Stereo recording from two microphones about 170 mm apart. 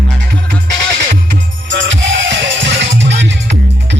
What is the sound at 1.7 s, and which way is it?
Music, 90° right.